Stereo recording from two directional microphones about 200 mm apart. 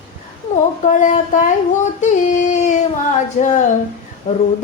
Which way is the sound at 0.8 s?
40° left (ahead or behind).